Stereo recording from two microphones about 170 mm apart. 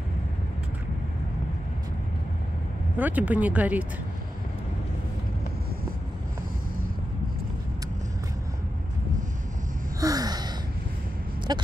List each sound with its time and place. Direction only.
3.0 s speech: 10° right (ahead or behind)
9.9 s gasp: 20° right (ahead or behind)
11.5 s speech: 25° right (ahead or behind)